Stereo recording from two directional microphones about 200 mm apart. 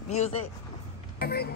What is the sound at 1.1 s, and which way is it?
Speech, 50° left (ahead or behind).